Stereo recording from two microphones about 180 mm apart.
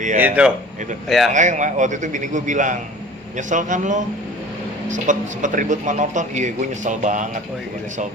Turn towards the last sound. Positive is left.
turn(degrees=-45)  # may be behind; listen again after turning